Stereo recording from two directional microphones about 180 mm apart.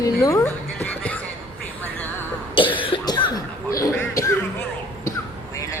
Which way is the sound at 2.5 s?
30° left (ahead or behind).